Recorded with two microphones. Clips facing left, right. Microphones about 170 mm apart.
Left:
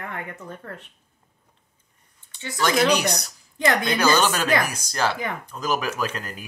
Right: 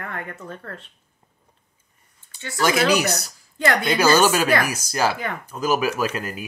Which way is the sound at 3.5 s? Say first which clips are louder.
Right 1 dB; 20° left (ahead or behind).